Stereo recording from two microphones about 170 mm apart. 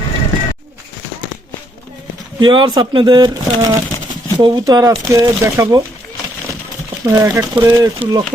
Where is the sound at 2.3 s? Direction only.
25° right (ahead or behind).